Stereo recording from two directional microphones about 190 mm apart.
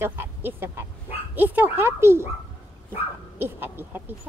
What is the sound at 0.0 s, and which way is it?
Speech, 10° right (ahead or behind).